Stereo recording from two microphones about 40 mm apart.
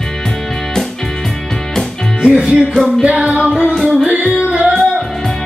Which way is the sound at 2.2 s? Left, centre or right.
Right.